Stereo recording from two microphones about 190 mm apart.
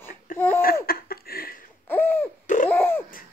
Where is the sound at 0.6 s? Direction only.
50° left (ahead or behind).